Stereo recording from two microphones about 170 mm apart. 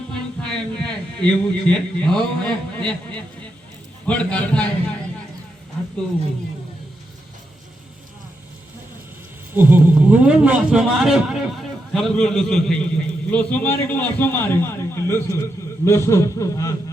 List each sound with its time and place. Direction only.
0.1 s a man's voice: 5° left (ahead or behind)
9.6 s a man's voice: 10° right (ahead or behind); by 16.7 s 15° left (ahead or behind)